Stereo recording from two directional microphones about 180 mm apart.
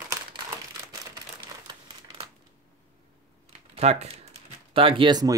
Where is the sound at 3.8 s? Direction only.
35° right (ahead or behind).